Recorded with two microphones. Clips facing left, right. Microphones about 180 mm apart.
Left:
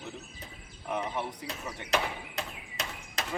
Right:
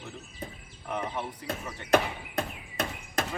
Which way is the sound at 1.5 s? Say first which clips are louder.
Right 6 dB; 55° right (ahead or behind).